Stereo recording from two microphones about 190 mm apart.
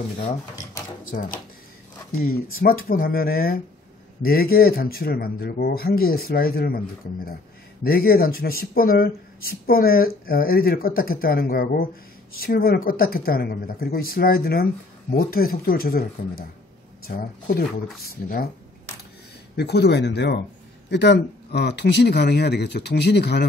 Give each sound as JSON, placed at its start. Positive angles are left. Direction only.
{"t": 1.0, "sound": "speech", "side_deg": 45}
{"t": 2.6, "sound": "speech", "side_deg": 50}
{"t": 7.8, "sound": "speech", "side_deg": 55}
{"t": 17.1, "sound": "speech", "side_deg": 65}
{"t": 19.5, "sound": "speech", "side_deg": 60}